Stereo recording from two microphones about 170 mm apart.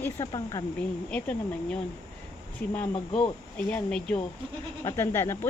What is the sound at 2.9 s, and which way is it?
Speech, 30° left (ahead or behind).